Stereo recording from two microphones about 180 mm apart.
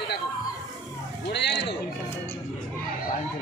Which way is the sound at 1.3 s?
70° left (ahead or behind).